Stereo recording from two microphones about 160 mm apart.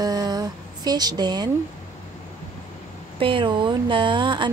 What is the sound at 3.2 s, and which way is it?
Speech, 30° right (ahead or behind).